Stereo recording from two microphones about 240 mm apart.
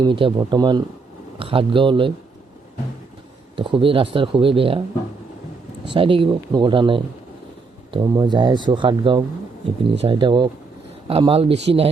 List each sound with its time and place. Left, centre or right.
0.0 s speech: right
3.5 s speech: right
5.9 s speech: right